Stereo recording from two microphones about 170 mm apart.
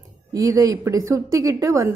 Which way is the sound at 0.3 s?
20° right (ahead or behind).